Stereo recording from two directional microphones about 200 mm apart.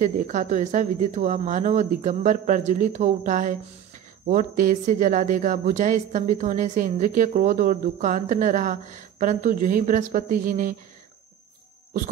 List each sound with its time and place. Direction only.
0.0 s a woman's voice: 40° right (ahead or behind)